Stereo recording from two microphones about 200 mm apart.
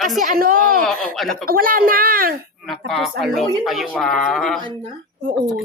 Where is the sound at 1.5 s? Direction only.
45° right (ahead or behind).